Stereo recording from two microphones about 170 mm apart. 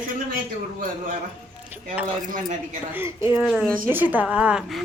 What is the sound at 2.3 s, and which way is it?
Speech, 50° right (ahead or behind).